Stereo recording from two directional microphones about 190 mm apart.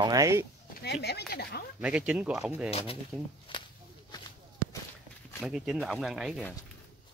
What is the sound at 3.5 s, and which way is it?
Walk, 25° left (ahead or behind).